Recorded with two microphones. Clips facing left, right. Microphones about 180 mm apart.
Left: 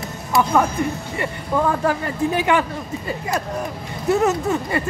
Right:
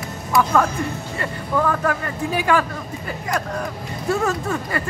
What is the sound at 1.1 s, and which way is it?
Speech, 25° left (ahead or behind).